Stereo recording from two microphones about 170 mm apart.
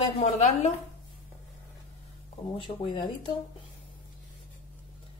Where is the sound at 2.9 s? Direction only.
30° left (ahead or behind).